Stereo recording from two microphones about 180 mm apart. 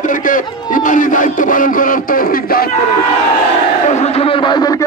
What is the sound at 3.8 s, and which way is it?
A man's voice, 40° left (ahead or behind).